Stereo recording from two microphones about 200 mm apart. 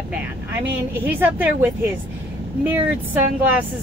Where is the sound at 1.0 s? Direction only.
10° right (ahead or behind).